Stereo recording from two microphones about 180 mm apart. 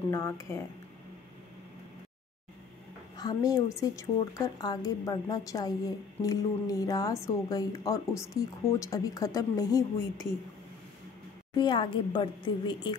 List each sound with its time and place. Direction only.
0.1 s speech: 15° left (ahead or behind)
3.2 s a woman's voice: 20° left (ahead or behind)
11.5 s a woman's voice: 25° left (ahead or behind)